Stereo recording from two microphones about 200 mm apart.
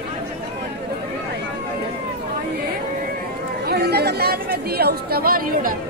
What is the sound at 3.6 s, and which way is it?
Chatter, 55° right (ahead or behind).